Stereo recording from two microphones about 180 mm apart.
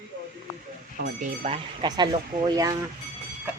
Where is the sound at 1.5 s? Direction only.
25° right (ahead or behind).